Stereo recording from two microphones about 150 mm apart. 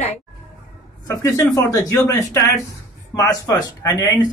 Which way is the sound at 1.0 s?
20° left (ahead or behind).